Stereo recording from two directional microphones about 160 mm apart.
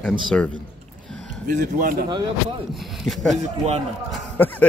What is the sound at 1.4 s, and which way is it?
Speech, 65° right (ahead or behind).